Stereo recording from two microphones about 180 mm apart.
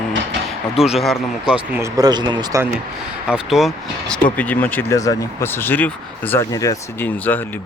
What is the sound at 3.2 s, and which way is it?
Speech, 5° right (ahead or behind).